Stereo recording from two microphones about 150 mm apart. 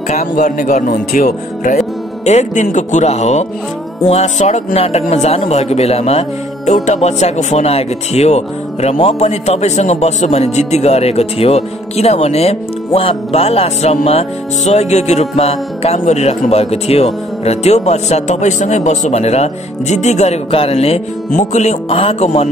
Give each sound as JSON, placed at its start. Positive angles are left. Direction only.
{"t": 0.1, "sound": "speech", "side_deg": 55}